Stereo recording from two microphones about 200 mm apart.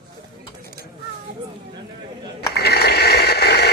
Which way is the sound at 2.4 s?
55° left (ahead or behind).